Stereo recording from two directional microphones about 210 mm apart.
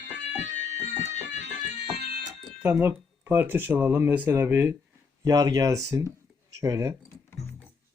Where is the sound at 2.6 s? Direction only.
5° right (ahead or behind).